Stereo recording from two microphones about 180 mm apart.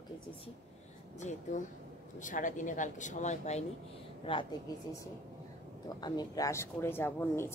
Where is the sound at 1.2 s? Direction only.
40° left (ahead or behind).